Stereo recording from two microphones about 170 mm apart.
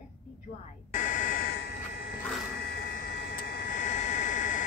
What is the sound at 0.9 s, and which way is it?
Speech, 50° left (ahead or behind).